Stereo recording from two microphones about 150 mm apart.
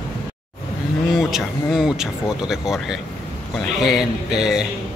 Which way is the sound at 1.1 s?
5° right (ahead or behind).